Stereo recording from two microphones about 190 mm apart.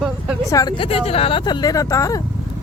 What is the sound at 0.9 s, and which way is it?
Speech, 30° left (ahead or behind).